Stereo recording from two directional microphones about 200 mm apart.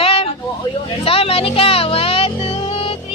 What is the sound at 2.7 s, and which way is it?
Music, 30° left (ahead or behind).